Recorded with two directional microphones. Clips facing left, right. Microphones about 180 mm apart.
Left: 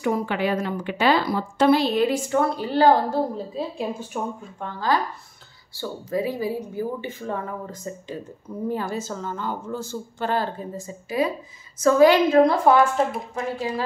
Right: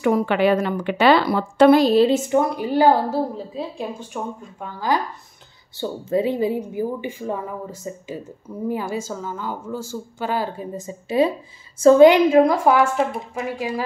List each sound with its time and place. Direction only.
0.0 s a woman's voice: 70° right (ahead or behind); by 2.0 s 50° right (ahead or behind)
2.0 s a woman's voice: 25° right (ahead or behind)
3.5 s speech: centre (ahead or behind)
4.6 s a woman's voice: 15° right (ahead or behind)
5.8 s a woman's voice: 25° right (ahead or behind); by 10.7 s 10° right (ahead or behind)
10.9 s speech: 25° right (ahead or behind)
12.1 s a woman's voice: 15° right (ahead or behind)